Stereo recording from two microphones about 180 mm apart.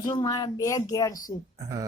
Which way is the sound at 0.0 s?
20° left (ahead or behind).